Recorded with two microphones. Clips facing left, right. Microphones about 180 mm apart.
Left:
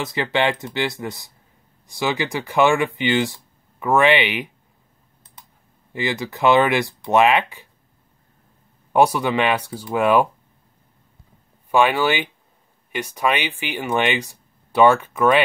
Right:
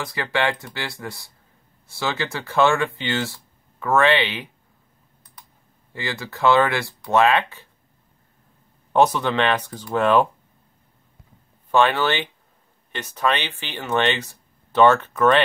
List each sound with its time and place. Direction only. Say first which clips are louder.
0.0 s speech: left 3 dB; 20° left (ahead or behind)
5.9 s speech: left 5 dB; 20° left (ahead or behind)
8.9 s speech: left 1 dB; 10° left (ahead or behind)
11.7 s speech: left 1 dB; 10° left (ahead or behind)